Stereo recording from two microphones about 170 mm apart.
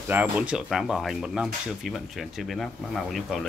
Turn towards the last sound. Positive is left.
turn(degrees=0)  # may be behind; listen again after turning